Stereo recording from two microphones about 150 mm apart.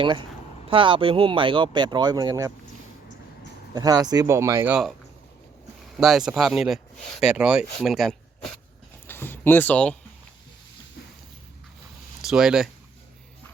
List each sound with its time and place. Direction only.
0.0 s speech: 30° right (ahead or behind)
3.8 s speech: 25° right (ahead or behind)
5.8 s speech: 5° right (ahead or behind)
9.0 s a sound: 15° left (ahead or behind)
12.3 s speech: 5° right (ahead or behind)